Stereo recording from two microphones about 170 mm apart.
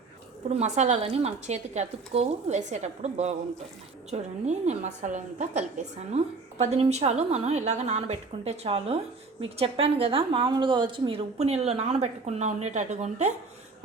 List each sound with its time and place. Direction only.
0.4 s a woman's voice: 40° right (ahead or behind)